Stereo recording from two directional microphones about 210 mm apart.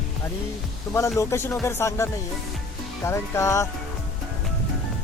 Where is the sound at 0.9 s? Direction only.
15° left (ahead or behind).